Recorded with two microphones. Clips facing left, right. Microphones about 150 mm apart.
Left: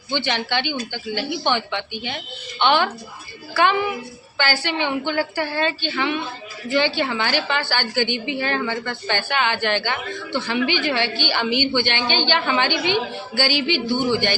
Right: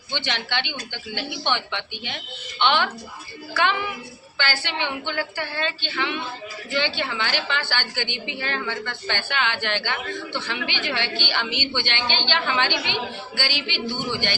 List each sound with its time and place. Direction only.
0.3 s a woman's voice: 45° left (ahead or behind)
4.8 s a woman's voice: 45° left (ahead or behind)